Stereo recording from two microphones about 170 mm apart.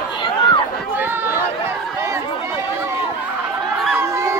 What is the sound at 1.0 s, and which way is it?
Chatter, 10° right (ahead or behind).